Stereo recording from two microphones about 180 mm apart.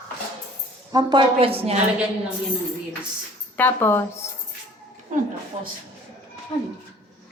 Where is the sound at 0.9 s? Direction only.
25° right (ahead or behind).